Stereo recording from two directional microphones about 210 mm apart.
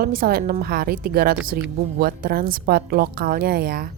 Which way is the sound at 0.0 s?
45° right (ahead or behind).